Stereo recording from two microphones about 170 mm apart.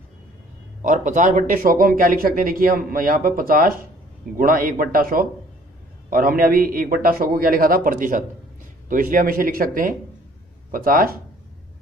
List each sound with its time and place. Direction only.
0.8 s speech: 50° right (ahead or behind)